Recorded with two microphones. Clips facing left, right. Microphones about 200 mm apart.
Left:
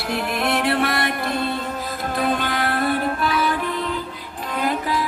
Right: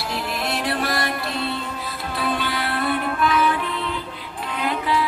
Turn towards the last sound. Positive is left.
turn(degrees=40)  # may be behind; listen again after turning